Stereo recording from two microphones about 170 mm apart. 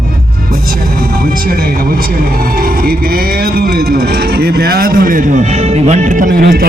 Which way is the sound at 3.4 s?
65° right (ahead or behind).